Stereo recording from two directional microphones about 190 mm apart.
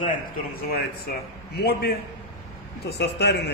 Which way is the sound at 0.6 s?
55° left (ahead or behind).